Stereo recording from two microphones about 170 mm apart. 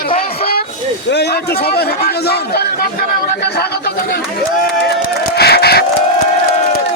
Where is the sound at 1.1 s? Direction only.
85° left.